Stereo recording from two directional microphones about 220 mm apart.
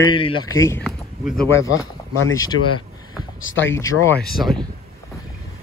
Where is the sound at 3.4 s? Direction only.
60° left (ahead or behind).